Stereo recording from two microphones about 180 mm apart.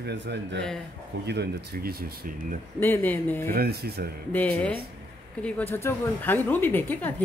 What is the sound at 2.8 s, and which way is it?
Speech, 10° left (ahead or behind).